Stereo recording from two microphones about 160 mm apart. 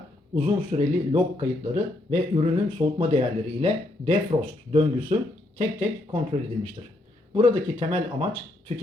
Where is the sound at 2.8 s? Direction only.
35° right (ahead or behind).